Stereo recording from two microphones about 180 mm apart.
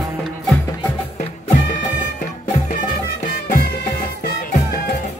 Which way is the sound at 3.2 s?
50° left (ahead or behind).